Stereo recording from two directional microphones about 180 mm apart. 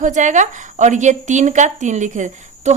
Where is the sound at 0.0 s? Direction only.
45° right (ahead or behind).